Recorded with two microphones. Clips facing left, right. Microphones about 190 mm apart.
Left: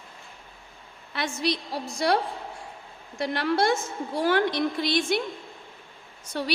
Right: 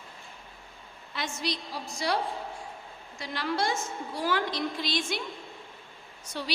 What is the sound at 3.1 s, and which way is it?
A woman's voice, 60° left (ahead or behind).